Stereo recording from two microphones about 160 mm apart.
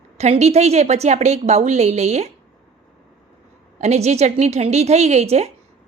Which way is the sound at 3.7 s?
45° right (ahead or behind).